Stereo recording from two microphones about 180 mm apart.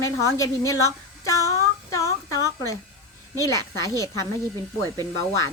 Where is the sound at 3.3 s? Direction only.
15° left (ahead or behind).